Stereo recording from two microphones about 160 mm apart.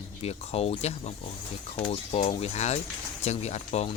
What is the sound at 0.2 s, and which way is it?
Speech, 40° left (ahead or behind).